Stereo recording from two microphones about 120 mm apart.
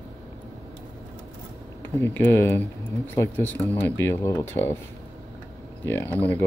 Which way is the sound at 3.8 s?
20° left (ahead or behind).